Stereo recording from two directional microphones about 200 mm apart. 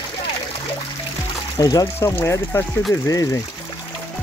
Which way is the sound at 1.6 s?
20° left (ahead or behind).